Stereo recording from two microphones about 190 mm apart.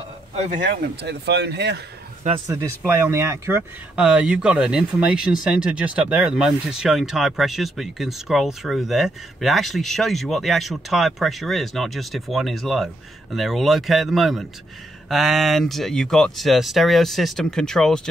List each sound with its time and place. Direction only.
0.3 s speech: 40° right (ahead or behind); by 1.8 s 60° right (ahead or behind)
2.2 s speech: 30° right (ahead or behind)
3.1 s speech: 15° right (ahead or behind); by 18.0 s 5° left (ahead or behind)